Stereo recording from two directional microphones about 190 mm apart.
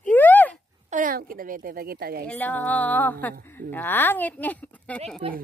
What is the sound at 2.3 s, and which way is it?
A woman's voice, 10° left (ahead or behind).